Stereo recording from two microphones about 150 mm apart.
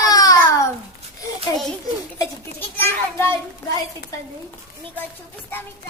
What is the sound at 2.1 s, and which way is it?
A child's voice, 15° left (ahead or behind).